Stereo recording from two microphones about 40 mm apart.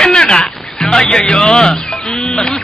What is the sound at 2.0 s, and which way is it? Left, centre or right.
Bird, centre.